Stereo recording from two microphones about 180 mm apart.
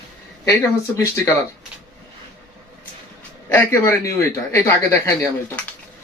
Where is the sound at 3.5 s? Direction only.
15° left (ahead or behind).